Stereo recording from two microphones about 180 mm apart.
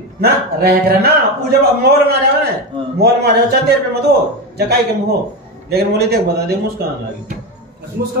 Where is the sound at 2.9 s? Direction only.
65° right (ahead or behind).